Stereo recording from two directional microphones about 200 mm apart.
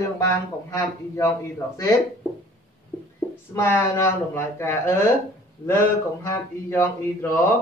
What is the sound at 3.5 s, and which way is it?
A man's voice, 10° left (ahead or behind).